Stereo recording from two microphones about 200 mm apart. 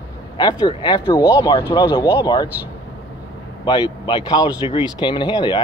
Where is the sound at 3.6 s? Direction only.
20° left (ahead or behind).